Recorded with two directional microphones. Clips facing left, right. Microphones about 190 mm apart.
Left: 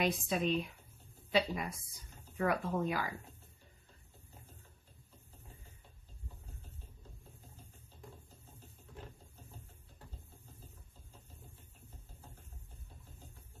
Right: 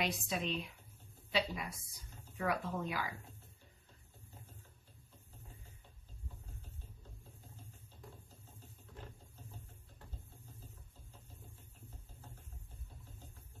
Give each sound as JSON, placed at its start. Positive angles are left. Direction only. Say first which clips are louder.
{"t": 0.0, "sound": "speech", "louder": "left 5 dB", "side_deg": 45}